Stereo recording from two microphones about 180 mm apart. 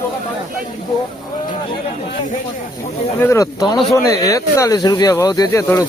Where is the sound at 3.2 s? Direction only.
15° left (ahead or behind).